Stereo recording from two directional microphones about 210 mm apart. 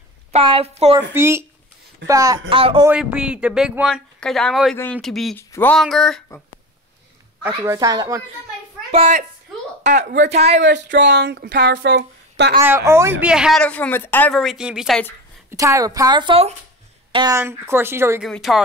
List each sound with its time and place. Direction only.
0.3 s a woman's voice: 25° right (ahead or behind)
0.9 s a woman's voice: 10° right (ahead or behind)
2.9 s speech: 5° right (ahead or behind)
7.4 s speech: 15° right (ahead or behind)
8.9 s a woman's voice: 30° right (ahead or behind)
9.9 s speech: 55° right (ahead or behind)
10.3 s speech: 30° right (ahead or behind)
10.6 s speech: 60° right (ahead or behind)
12.6 s speech: 10° right (ahead or behind)
15.5 s speech: 15° right (ahead or behind)
18.2 s speech: centre (ahead or behind)